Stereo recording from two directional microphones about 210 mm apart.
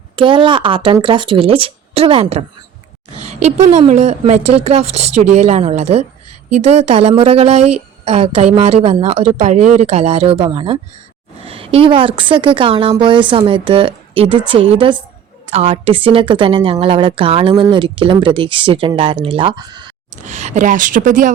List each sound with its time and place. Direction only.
0.2 s speech: 25° right (ahead or behind)
3.6 s speech: 35° right (ahead or behind)
20.2 s speech: 35° right (ahead or behind)